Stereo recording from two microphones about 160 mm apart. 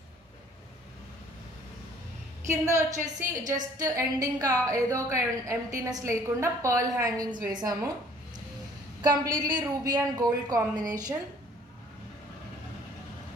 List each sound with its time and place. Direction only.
2.6 s a woman's voice: 20° right (ahead or behind)
9.0 s a woman's voice: 25° right (ahead or behind)